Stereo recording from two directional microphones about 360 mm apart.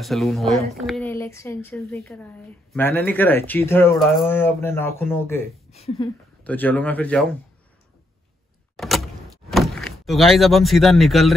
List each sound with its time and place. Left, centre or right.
0.0 s speech: centre
5.7 s speech: centre
6.4 s speech: centre
8.7 s power windows: centre
9.5 s speech: centre